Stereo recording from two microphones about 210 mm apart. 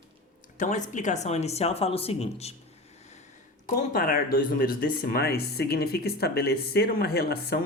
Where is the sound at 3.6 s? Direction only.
40° left (ahead or behind).